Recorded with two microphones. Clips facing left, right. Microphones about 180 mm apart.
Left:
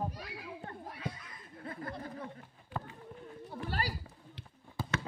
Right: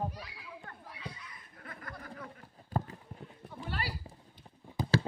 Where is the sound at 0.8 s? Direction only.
50° left (ahead or behind).